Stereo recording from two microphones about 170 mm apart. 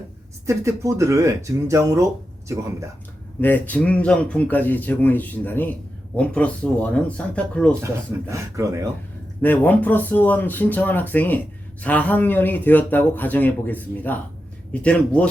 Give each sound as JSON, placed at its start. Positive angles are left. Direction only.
{"t": 0.4, "sound": "speech", "side_deg": -15}
{"t": 3.4, "sound": "speech", "side_deg": 10}
{"t": 8.3, "sound": "speech", "side_deg": -20}
{"t": 9.4, "sound": "speech", "side_deg": 10}